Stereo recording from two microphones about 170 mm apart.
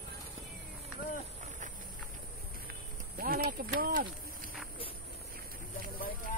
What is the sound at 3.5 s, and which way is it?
Speech, 60° right (ahead or behind).